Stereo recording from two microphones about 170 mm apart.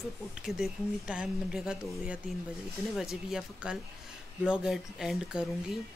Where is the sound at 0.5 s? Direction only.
5° right (ahead or behind).